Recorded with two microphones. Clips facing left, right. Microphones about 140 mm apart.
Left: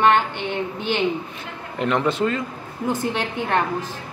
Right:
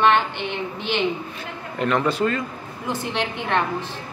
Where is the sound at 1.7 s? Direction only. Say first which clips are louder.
Even; 20° left (ahead or behind).